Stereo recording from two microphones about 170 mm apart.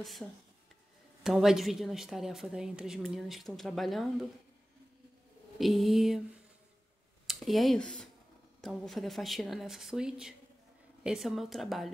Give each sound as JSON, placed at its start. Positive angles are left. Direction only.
{"t": 0.2, "sound": "a woman's voice", "side_deg": 0}
{"t": 5.6, "sound": "a woman's voice", "side_deg": 0}
{"t": 7.2, "sound": "a woman's voice", "side_deg": 0}